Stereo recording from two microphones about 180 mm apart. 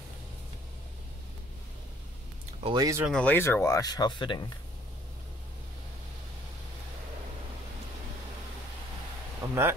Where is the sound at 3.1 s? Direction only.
5° left (ahead or behind); by 4.4 s 25° left (ahead or behind).